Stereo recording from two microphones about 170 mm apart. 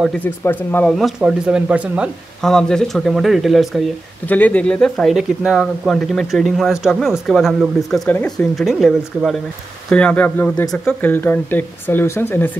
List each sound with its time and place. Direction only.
0.2 s speech: 10° left (ahead or behind)
0.9 s speech: centre (ahead or behind); by 12.4 s 15° left (ahead or behind)